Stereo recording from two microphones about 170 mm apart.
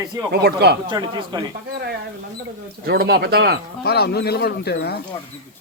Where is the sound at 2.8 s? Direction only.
70° right (ahead or behind).